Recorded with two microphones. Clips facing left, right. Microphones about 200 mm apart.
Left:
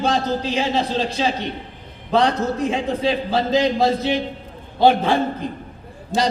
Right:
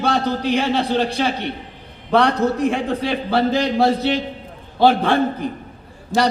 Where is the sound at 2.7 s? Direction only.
65° right (ahead or behind).